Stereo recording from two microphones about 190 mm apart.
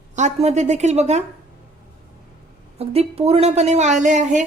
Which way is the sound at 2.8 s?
35° right (ahead or behind).